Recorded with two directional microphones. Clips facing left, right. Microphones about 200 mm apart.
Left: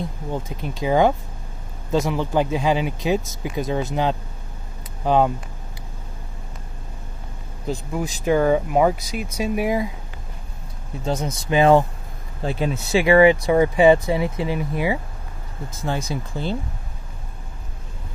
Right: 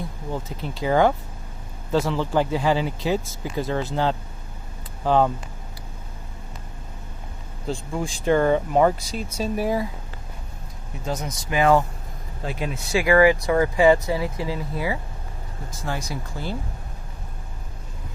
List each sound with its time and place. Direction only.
0.3 s speech: 15° left (ahead or behind)
7.6 s speech: 5° left (ahead or behind)
11.1 s speech: 30° left (ahead or behind)